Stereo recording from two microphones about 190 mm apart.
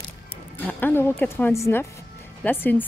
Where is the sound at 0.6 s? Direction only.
10° left (ahead or behind).